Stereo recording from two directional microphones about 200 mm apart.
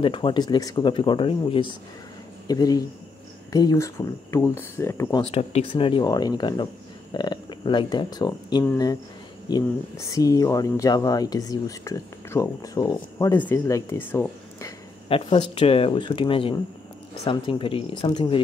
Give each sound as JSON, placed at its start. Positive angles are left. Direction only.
{"t": 0.0, "sound": "speech", "side_deg": 25}
{"t": 5.2, "sound": "speech", "side_deg": 30}
{"t": 15.0, "sound": "speech", "side_deg": 30}